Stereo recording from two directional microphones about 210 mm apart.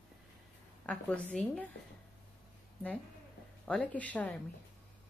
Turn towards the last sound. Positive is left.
turn(degrees=5)  # may be behind; listen again after turning